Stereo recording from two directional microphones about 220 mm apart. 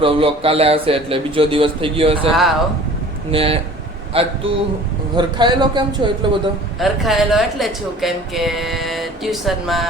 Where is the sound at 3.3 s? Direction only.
25° right (ahead or behind).